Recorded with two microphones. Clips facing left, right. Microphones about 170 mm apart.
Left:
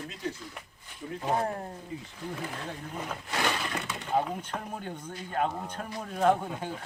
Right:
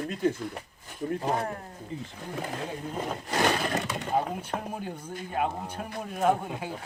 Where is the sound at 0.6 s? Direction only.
40° right (ahead or behind).